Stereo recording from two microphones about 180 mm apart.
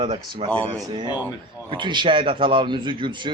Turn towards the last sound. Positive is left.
turn(degrees=-25)  # may be behind; listen again after turning